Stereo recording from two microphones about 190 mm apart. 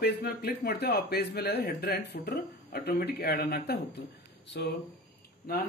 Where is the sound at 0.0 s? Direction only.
55° left (ahead or behind).